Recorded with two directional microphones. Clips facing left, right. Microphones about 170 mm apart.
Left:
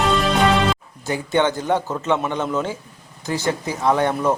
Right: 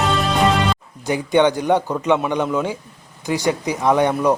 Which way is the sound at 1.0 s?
15° right (ahead or behind).